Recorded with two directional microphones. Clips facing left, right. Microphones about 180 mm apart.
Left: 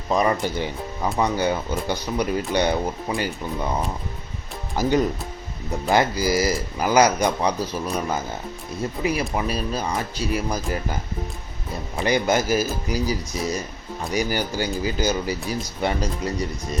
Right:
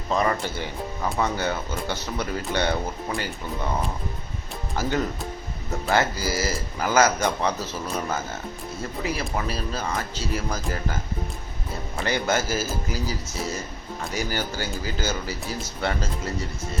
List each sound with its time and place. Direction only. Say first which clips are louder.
0.1 s speech: left 3 dB; 15° left (ahead or behind)
4.8 s speech: left 5 dB; 15° left (ahead or behind)
12.0 s speech: left 4 dB; 15° left (ahead or behind)